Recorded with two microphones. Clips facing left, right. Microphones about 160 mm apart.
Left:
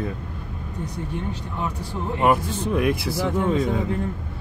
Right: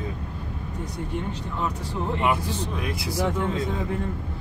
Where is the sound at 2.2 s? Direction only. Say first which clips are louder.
Left 6 dB; 55° left (ahead or behind).